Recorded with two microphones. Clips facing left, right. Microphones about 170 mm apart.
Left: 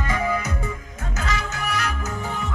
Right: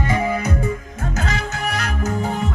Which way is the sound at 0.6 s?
45° right (ahead or behind).